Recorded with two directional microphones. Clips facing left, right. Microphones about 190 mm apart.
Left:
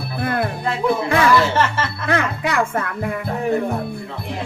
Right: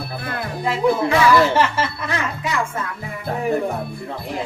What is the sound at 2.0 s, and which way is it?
Speech, 60° left (ahead or behind).